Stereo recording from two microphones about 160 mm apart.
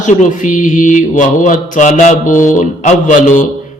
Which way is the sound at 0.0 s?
50° left (ahead or behind).